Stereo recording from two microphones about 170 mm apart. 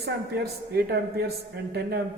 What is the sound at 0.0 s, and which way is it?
A man's voice, 70° right (ahead or behind).